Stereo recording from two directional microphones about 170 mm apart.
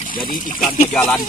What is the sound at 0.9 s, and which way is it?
Speech, 10° left (ahead or behind).